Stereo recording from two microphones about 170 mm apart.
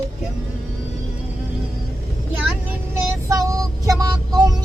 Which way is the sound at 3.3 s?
20° right (ahead or behind).